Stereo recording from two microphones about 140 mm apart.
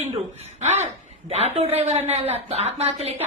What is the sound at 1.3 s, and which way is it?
A woman's voice, 45° right (ahead or behind).